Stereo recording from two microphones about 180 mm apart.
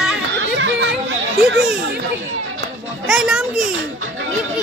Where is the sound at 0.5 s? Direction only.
90° right.